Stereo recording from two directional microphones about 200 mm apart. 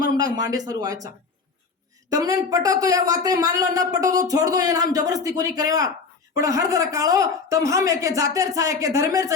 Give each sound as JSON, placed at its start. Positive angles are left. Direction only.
{"t": 0.0, "sound": "speech", "side_deg": -15}